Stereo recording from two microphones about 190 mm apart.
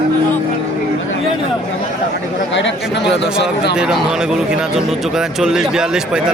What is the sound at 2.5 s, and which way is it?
Speech, 70° left (ahead or behind).